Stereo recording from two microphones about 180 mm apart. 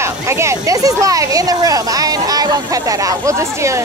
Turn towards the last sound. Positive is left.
turn(degrees=-15)  # may be behind; listen again after turning